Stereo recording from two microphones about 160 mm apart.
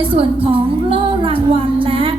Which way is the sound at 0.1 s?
35° right (ahead or behind).